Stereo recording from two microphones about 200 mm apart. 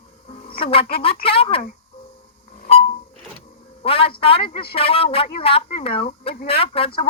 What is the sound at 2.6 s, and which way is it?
Beep, 30° left (ahead or behind).